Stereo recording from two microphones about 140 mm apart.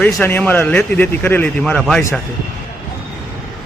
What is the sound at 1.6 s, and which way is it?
Speech, centre (ahead or behind).